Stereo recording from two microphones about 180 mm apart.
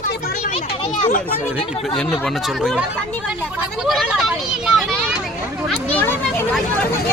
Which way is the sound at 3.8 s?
Centre (ahead or behind).